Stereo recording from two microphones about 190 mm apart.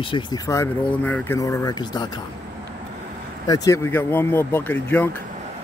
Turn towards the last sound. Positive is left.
turn(degrees=10)  # may be behind; listen again after turning